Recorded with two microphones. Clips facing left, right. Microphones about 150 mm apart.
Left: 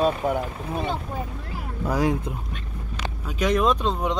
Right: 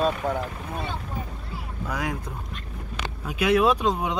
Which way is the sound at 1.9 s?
35° left (ahead or behind).